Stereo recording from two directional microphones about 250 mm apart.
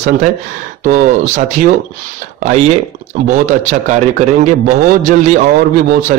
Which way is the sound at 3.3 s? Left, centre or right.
Right.